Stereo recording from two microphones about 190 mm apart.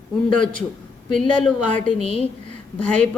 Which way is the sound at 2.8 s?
5° left (ahead or behind).